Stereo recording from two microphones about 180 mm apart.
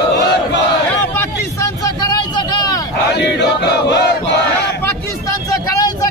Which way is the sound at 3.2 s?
70° left (ahead or behind).